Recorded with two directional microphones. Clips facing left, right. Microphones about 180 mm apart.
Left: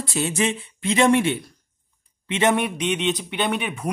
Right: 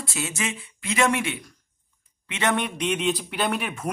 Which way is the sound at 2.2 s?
20° left (ahead or behind).